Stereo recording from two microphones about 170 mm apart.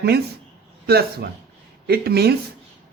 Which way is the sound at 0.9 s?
70° right (ahead or behind).